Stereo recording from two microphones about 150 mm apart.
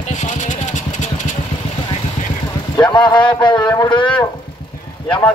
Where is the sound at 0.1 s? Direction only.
55° left (ahead or behind).